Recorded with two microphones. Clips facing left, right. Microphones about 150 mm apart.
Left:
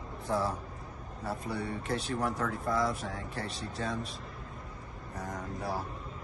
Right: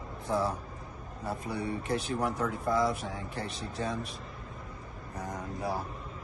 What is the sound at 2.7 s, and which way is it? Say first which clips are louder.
Speech: right 3 dB; centre (ahead or behind).